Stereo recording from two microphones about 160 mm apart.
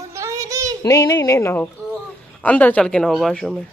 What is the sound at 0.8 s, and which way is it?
Speech, 20° left (ahead or behind).